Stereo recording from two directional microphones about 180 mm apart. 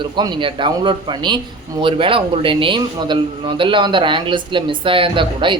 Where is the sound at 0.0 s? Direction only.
25° right (ahead or behind).